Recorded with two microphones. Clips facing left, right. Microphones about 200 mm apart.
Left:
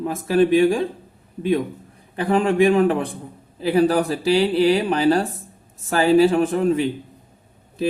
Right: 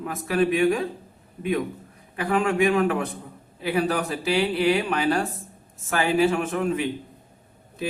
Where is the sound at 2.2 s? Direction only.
30° left (ahead or behind).